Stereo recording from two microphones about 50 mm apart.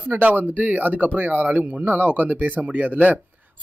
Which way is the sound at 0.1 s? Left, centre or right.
Right.